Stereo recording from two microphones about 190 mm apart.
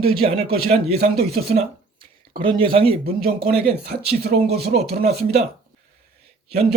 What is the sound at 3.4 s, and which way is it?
Speech, 55° right (ahead or behind).